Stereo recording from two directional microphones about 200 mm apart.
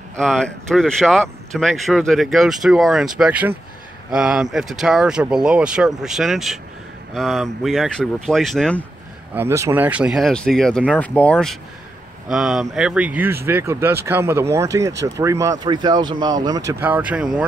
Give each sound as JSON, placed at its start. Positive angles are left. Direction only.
{"t": 0.1, "sound": "speech", "side_deg": 5}
{"t": 9.3, "sound": "speech", "side_deg": -10}
{"t": 16.8, "sound": "speech", "side_deg": -10}